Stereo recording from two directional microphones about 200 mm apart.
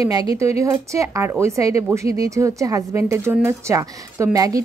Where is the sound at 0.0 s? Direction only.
15° right (ahead or behind).